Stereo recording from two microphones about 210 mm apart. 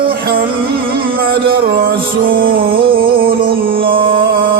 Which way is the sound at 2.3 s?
45° right (ahead or behind).